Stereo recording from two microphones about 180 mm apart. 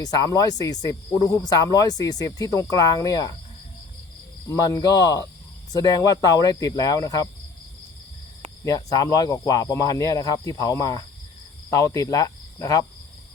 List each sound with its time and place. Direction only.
0.0 s speech: 20° left (ahead or behind)
4.4 s speech: 20° left (ahead or behind)
8.6 s speech: 20° left (ahead or behind)